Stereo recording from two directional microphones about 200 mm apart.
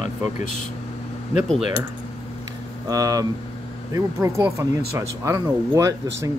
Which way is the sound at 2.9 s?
15° right (ahead or behind).